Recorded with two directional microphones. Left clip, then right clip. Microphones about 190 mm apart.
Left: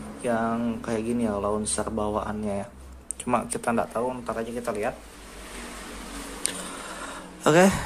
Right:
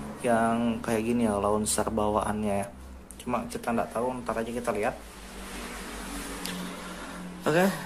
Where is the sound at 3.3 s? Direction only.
20° left (ahead or behind); by 4.9 s centre (ahead or behind).